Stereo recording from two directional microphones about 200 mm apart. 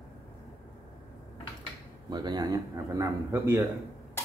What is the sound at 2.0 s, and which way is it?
Speech, 20° right (ahead or behind).